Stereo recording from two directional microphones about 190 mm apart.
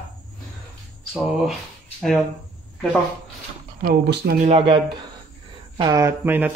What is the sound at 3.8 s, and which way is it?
Speech, 55° right (ahead or behind).